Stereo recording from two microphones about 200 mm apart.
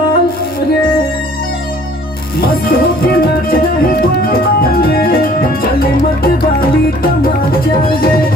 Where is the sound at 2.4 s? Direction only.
45° left (ahead or behind).